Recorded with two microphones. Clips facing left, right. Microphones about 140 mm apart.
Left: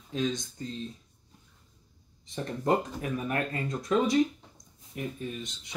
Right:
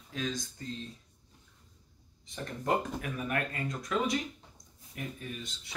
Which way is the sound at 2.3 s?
30° left (ahead or behind).